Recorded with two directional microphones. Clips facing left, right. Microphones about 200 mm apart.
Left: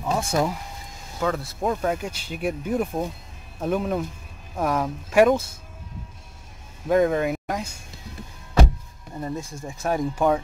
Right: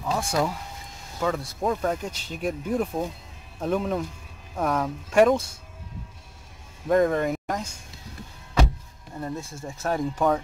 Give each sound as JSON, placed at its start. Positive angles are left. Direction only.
{"t": 0.0, "sound": "speech", "side_deg": 20}
{"t": 1.2, "sound": "speech", "side_deg": 0}
{"t": 6.9, "sound": "speech", "side_deg": 5}
{"t": 9.2, "sound": "speech", "side_deg": 15}